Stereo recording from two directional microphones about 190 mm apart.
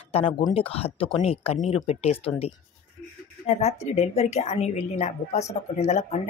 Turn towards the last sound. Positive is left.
turn(degrees=35)  # may be behind; listen again after turning